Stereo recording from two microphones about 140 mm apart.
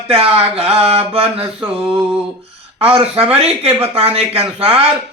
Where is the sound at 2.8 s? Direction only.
45° right (ahead or behind).